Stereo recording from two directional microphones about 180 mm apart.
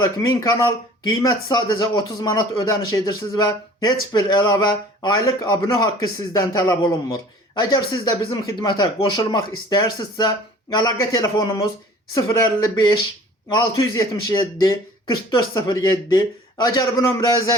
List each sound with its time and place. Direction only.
0.0 s speech: 20° left (ahead or behind)